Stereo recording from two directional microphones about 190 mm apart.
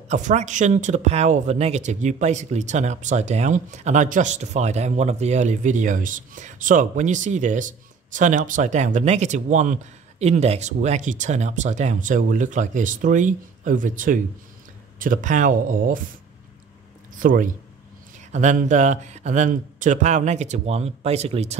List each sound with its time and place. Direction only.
0.1 s speech: 40° right (ahead or behind)
17.2 s speech: 45° right (ahead or behind)